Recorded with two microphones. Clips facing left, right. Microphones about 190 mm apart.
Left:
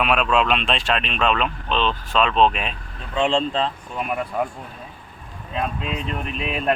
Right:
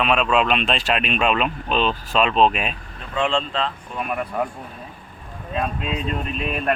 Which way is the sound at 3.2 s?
30° left (ahead or behind).